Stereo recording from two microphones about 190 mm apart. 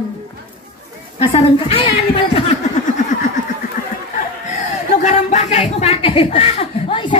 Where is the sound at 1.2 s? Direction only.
30° left (ahead or behind).